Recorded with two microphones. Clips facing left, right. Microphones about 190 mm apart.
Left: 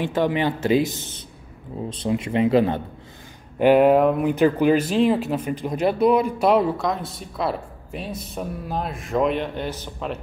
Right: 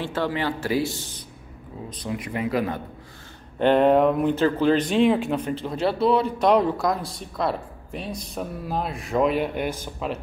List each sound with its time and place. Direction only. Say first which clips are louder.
0.0 s speech: left 4 dB; 15° left (ahead or behind)
3.5 s speech: left 3 dB; 10° left (ahead or behind); by 10.1 s 5° right (ahead or behind)